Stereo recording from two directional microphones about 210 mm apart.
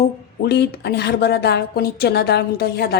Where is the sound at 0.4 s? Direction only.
50° left (ahead or behind).